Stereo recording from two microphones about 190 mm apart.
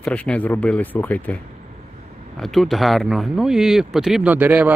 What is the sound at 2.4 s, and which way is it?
Speech, centre (ahead or behind).